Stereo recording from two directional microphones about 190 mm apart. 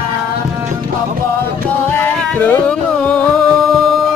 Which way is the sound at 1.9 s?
10° left (ahead or behind).